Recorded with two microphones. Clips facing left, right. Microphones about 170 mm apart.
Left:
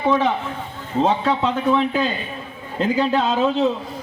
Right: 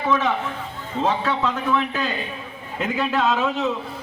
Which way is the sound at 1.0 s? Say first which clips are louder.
Left 2 dB; 30° left (ahead or behind).